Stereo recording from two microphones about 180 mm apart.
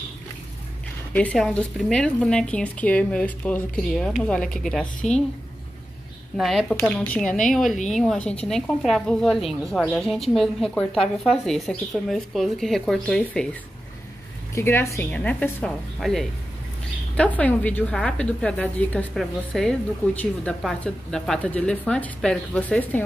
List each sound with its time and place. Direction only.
1.1 s a woman's voice: 5° left (ahead or behind)
6.3 s a woman's voice: centre (ahead or behind)
7.2 s a woman's voice: 45° left (ahead or behind)
7.5 s a woman's voice: centre (ahead or behind)
14.5 s a woman's voice: 15° left (ahead or behind)